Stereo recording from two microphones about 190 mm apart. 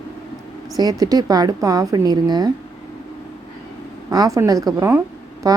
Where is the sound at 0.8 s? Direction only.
20° right (ahead or behind).